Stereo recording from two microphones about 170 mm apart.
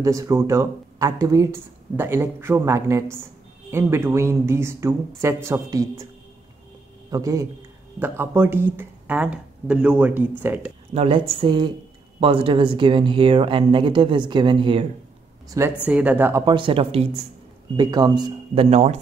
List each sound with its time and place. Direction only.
0.0 s speech: 20° right (ahead or behind)
7.1 s a man's voice: 20° right (ahead or behind)
10.9 s speech: 35° right (ahead or behind); by 15.7 s 20° right (ahead or behind)
15.9 s speech: 10° right (ahead or behind)
16.4 s speech: 30° right (ahead or behind)
17.7 s speech: 25° right (ahead or behind)